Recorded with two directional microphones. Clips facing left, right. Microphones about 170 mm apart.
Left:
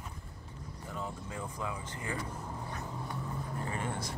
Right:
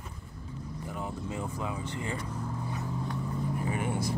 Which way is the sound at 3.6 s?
10° right (ahead or behind).